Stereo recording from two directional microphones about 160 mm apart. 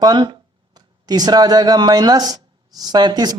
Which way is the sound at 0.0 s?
30° right (ahead or behind).